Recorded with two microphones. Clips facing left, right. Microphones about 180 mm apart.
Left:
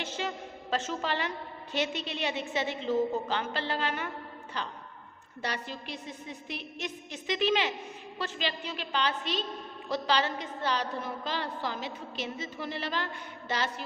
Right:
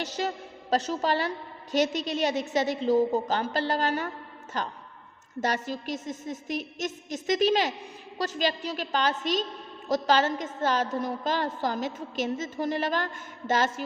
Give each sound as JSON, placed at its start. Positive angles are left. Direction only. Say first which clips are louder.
{"t": 0.0, "sound": "a woman's voice", "louder": "right 4 dB", "side_deg": -40}